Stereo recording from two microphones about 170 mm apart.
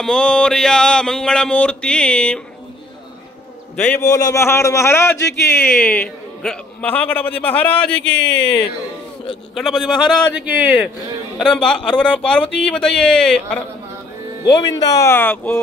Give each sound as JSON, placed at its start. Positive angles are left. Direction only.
{"t": 0.0, "sound": "speech", "side_deg": 5}
{"t": 3.7, "sound": "a man's voice", "side_deg": 10}
{"t": 4.0, "sound": "a man's voice", "side_deg": 20}
{"t": 8.1, "sound": "speech", "side_deg": 90}
{"t": 9.6, "sound": "speech", "side_deg": 0}
{"t": 14.8, "sound": "a man's voice", "side_deg": 15}